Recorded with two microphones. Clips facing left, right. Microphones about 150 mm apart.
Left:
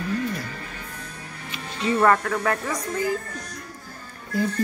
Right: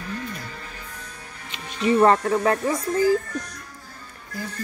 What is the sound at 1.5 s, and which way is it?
Speech, 20° right (ahead or behind).